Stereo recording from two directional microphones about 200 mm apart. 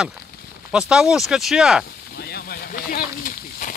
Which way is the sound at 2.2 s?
50° left (ahead or behind).